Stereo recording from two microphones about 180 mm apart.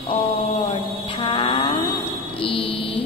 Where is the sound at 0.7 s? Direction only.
30° left (ahead or behind).